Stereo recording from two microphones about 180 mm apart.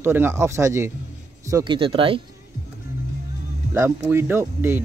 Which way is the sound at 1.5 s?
25° right (ahead or behind).